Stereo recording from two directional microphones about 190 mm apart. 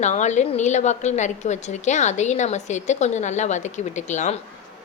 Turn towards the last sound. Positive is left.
turn(degrees=40)  # may be behind; listen again after turning